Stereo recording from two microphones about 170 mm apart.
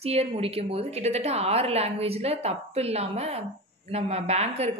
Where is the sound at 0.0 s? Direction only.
35° right (ahead or behind).